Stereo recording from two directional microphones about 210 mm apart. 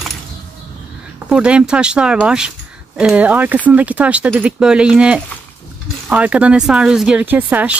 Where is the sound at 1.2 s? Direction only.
5° right (ahead or behind).